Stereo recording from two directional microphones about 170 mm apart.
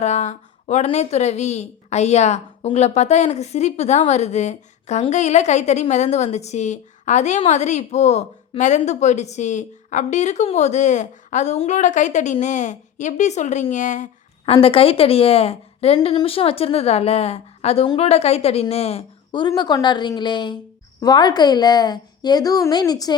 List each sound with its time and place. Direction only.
0.0 s a woman's voice: 40° left (ahead or behind); by 23.1 s 25° left (ahead or behind)